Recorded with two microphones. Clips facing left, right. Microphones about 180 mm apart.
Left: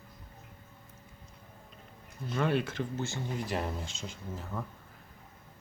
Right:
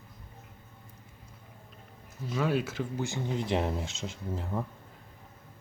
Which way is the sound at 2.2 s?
5° right (ahead or behind).